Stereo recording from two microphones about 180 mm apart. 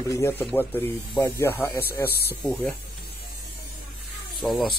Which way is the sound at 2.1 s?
60° left (ahead or behind).